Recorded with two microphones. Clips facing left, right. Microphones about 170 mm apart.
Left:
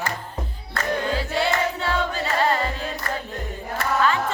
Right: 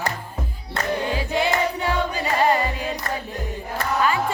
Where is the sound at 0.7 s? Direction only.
15° right (ahead or behind).